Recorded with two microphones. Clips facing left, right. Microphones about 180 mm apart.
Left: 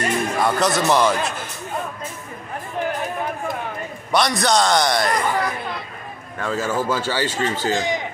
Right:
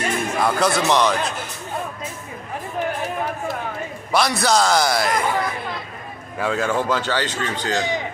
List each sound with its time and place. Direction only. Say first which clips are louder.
0.0 s speech: left 1 dB; centre (ahead or behind)
4.1 s speech: even; 5° right (ahead or behind)
6.4 s speech: right 1 dB; centre (ahead or behind)